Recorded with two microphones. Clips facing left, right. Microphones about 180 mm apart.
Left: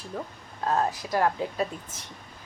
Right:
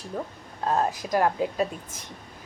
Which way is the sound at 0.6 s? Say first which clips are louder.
Right 1 dB; 25° right (ahead or behind).